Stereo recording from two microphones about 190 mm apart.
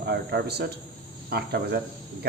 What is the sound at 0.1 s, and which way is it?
Speech, 60° right (ahead or behind).